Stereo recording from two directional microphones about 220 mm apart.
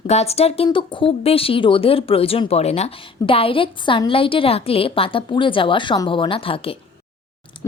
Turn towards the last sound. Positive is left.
turn(degrees=25)  # may be behind; listen again after turning